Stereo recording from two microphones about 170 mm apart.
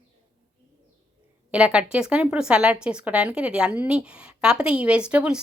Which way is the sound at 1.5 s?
5° right (ahead or behind).